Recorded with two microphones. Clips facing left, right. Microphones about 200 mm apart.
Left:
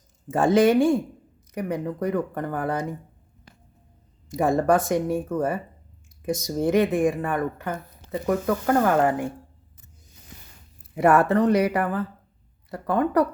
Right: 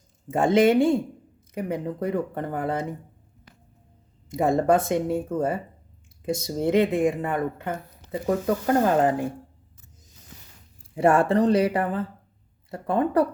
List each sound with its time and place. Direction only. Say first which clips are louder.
0.3 s speech: left 1 dB; 25° right (ahead or behind)
4.3 s speech: even; 25° right (ahead or behind)
10.9 s speech: left 1 dB; 30° right (ahead or behind)